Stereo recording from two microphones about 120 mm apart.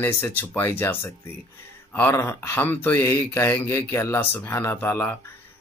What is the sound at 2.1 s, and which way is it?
Speech, 25° left (ahead or behind).